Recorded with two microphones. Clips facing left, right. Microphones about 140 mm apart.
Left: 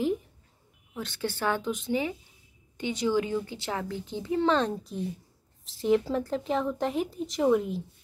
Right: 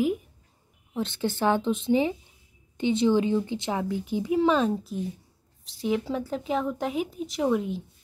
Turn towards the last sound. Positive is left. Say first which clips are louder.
# left 1 dB
turn(degrees=0)  # may be behind; listen again after turning